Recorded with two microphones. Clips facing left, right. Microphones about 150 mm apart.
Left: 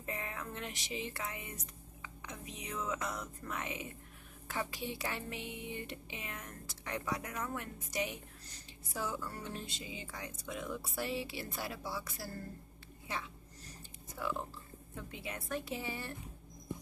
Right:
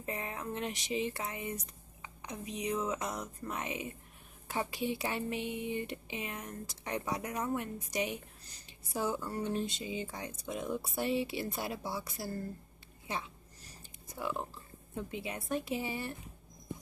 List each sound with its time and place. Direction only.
0.0 s music: 30° right (ahead or behind)
2.0 s speech: 20° right (ahead or behind)
14.2 s speech: 20° right (ahead or behind)